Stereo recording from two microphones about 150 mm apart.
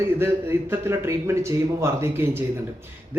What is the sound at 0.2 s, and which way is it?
Speech, 15° right (ahead or behind).